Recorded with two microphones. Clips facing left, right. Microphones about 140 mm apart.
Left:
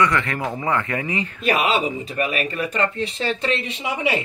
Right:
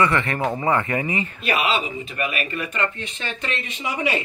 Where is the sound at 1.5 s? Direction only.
45° left (ahead or behind); by 4.1 s 25° left (ahead or behind).